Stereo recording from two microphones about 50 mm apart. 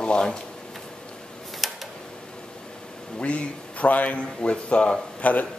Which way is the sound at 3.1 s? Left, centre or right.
Left.